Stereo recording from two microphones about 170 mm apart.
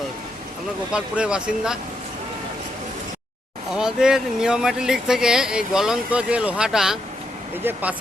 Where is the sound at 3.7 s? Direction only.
5° right (ahead or behind).